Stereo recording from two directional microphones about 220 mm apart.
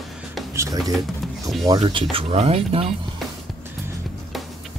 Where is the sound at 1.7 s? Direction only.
20° right (ahead or behind).